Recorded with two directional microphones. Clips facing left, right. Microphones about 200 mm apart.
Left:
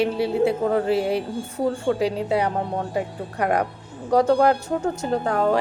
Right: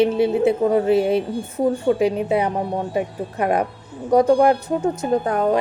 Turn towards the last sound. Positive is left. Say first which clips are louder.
# right 2 dB
turn(degrees=-20)  # may be behind; listen again after turning